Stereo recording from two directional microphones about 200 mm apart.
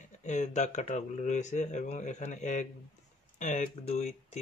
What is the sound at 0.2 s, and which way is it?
Speech, 35° left (ahead or behind).